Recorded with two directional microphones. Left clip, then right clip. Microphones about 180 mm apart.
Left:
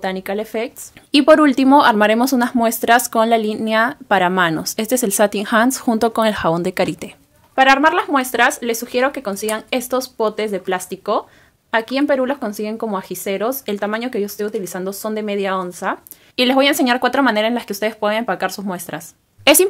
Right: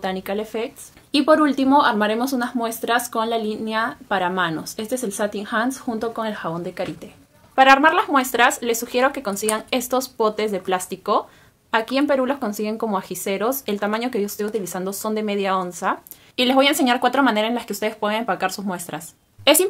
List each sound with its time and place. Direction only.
0.0 s speech: 25° left (ahead or behind)
1.1 s speech: 45° left (ahead or behind); by 7.1 s 75° left (ahead or behind)
7.5 s speech: 25° left (ahead or behind)